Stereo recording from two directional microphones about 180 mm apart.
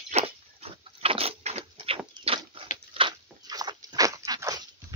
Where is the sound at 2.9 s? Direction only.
25° right (ahead or behind).